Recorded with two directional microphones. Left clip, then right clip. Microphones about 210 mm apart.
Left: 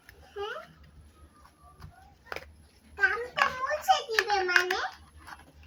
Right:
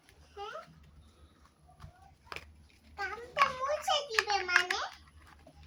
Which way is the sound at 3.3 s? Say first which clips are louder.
Left 2 dB; 25° right (ahead or behind).